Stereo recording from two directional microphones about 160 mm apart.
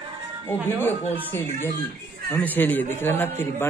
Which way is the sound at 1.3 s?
15° left (ahead or behind).